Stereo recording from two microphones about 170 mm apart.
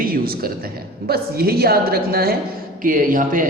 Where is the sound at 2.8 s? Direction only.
50° right (ahead or behind).